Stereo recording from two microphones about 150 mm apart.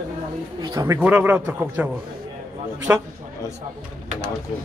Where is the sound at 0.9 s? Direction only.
10° right (ahead or behind).